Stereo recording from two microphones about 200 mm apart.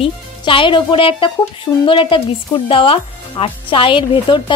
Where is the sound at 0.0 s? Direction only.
25° left (ahead or behind).